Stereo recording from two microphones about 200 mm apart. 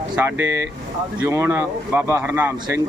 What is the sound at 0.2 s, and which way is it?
Speech, 10° right (ahead or behind).